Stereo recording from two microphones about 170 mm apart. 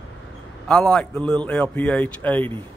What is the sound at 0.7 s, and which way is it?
A man's voice, 5° left (ahead or behind).